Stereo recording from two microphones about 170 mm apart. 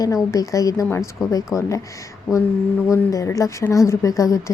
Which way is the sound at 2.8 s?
20° left (ahead or behind).